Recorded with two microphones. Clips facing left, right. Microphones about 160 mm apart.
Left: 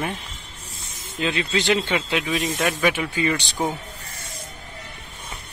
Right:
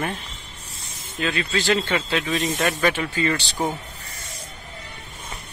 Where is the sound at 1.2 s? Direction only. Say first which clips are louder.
Left 1 dB; 20° left (ahead or behind).